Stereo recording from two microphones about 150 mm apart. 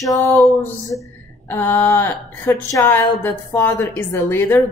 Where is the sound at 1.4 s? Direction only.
15° left (ahead or behind).